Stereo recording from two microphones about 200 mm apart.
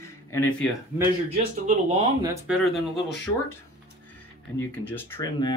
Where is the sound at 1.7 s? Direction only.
35° right (ahead or behind).